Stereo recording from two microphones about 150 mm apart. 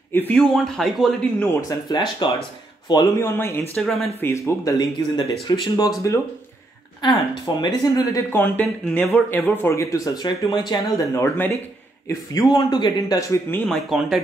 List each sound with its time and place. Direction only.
0.1 s speech: 10° left (ahead or behind)
1.4 s speech: 15° left (ahead or behind)
1.9 s speech: 30° left (ahead or behind)
3.7 s speech: centre (ahead or behind)
4.2 s speech: 20° left (ahead or behind)
7.0 s speech: 30° left (ahead or behind)
8.4 s speech: 10° left (ahead or behind); by 13.4 s 30° left (ahead or behind)
13.5 s speech: 10° left (ahead or behind)
13.8 s speech: centre (ahead or behind)